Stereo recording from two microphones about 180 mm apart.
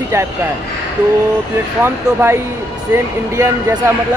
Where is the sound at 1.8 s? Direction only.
15° right (ahead or behind).